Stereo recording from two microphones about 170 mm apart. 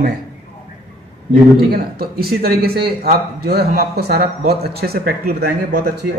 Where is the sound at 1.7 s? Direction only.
65° right (ahead or behind).